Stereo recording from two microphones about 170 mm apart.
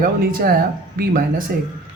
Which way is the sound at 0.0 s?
55° right (ahead or behind).